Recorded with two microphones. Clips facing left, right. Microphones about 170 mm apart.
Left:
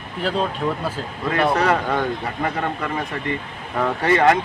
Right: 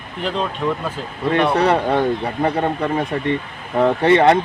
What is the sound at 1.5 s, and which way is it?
Speech, 30° right (ahead or behind).